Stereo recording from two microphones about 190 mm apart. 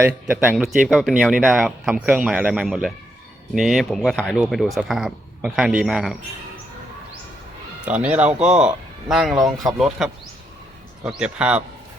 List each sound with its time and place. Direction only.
0.0 s speech: 5° right (ahead or behind)
7.9 s speech: 5° right (ahead or behind)